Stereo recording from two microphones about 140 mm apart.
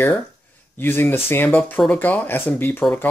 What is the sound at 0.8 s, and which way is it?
Speech, 15° left (ahead or behind).